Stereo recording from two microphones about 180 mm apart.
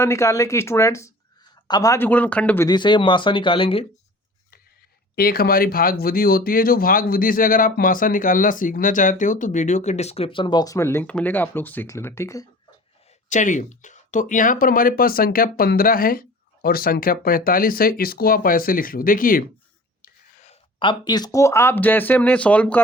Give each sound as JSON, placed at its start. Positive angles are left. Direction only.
{"t": 0.0, "sound": "speech", "side_deg": 15}
{"t": 2.6, "sound": "speech", "side_deg": 25}
{"t": 5.1, "sound": "speech", "side_deg": 55}
{"t": 13.3, "sound": "speech", "side_deg": 45}
{"t": 20.0, "sound": "speech", "side_deg": 40}